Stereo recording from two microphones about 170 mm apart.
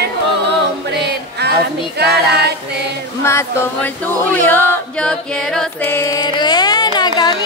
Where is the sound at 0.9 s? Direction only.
80° right.